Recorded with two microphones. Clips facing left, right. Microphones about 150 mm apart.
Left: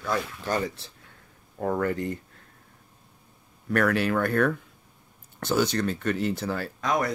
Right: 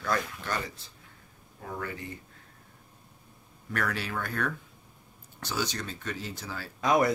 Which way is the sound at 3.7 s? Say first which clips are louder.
Left 9 dB; 60° left (ahead or behind).